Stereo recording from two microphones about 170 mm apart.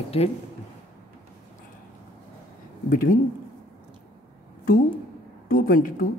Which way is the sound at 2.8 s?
55° left (ahead or behind).